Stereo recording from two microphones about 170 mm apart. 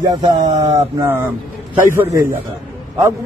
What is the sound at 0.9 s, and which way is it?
Speech, 15° right (ahead or behind).